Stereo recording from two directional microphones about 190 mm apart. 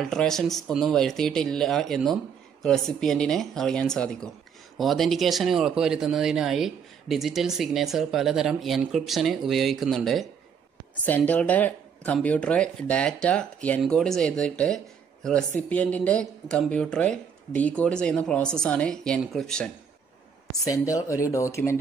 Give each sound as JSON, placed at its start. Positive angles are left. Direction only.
{"t": 0.0, "sound": "speech", "side_deg": 0}
{"t": 20.6, "sound": "speech", "side_deg": 15}